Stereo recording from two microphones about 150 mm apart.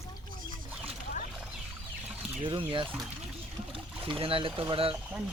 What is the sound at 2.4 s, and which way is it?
Speech, 35° right (ahead or behind).